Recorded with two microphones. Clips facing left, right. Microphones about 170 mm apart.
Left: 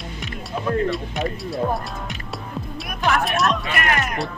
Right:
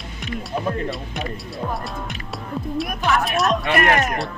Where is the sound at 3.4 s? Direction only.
50° right (ahead or behind).